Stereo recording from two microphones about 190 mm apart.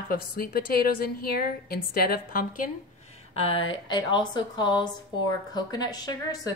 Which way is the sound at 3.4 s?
30° left (ahead or behind).